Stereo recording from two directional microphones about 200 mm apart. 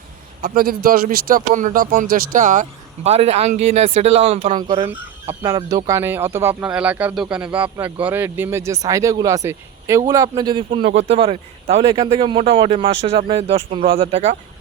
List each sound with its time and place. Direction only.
0.4 s a man's voice: 45° right (ahead or behind); by 4.9 s 25° right (ahead or behind)
4.9 s a man's voice: 10° right (ahead or behind); by 14.3 s 30° right (ahead or behind)